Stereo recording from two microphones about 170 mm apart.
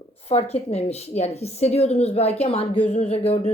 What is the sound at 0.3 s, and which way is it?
Speech, 35° left (ahead or behind).